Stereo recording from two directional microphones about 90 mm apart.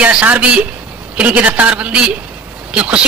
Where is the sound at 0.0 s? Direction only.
15° right (ahead or behind).